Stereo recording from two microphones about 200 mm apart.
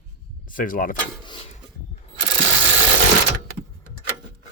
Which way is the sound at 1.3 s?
25° left (ahead or behind).